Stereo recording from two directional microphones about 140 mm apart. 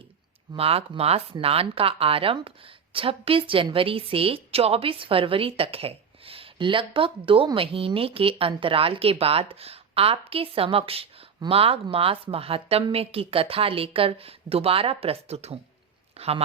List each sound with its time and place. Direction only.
0.5 s a woman's voice: 45° right (ahead or behind)